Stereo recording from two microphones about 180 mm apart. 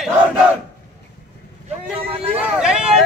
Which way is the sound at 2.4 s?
5° right (ahead or behind).